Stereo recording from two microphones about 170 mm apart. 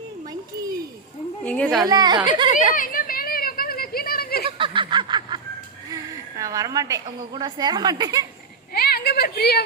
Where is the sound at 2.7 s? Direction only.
55° left (ahead or behind).